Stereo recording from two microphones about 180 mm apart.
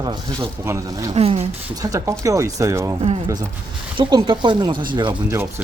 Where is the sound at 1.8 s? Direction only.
20° right (ahead or behind).